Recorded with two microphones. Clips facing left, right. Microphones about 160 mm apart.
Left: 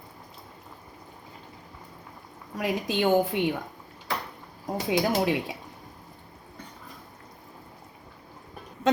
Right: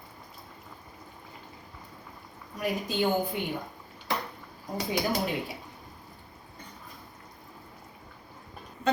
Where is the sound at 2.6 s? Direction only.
90° left.